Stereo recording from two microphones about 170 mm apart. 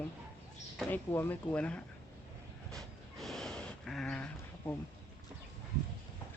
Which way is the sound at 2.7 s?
Centre (ahead or behind).